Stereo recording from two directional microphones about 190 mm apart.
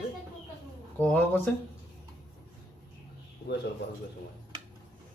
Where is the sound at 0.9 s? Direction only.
10° left (ahead or behind).